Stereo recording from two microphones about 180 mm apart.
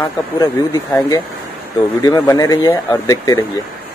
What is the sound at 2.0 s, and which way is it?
Speech, 20° left (ahead or behind).